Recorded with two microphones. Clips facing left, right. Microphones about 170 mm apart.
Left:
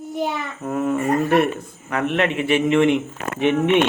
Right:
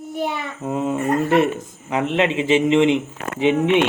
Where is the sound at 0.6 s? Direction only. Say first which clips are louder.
Even; 20° right (ahead or behind).